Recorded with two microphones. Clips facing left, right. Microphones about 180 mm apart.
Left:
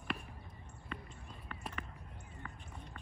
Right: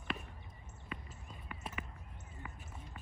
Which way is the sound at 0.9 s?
5° right (ahead or behind).